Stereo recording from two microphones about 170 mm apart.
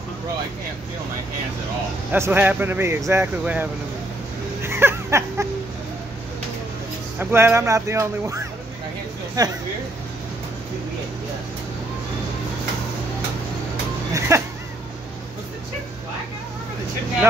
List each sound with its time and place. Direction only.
2.1 s speech: 15° right (ahead or behind)
4.6 s a sound: 15° right (ahead or behind)
7.2 s speech: 15° right (ahead or behind)
14.1 s speech: 15° right (ahead or behind)